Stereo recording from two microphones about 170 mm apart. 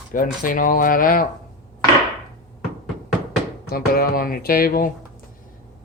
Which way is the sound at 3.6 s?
60° left (ahead or behind).